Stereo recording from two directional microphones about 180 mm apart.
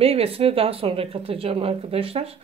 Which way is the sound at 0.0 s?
30° right (ahead or behind).